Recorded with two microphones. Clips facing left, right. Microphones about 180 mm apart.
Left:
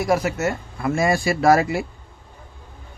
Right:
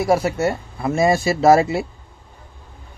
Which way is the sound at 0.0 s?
30° right (ahead or behind).